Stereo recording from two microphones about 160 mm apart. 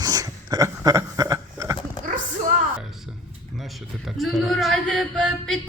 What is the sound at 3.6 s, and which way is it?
A man's voice, centre (ahead or behind).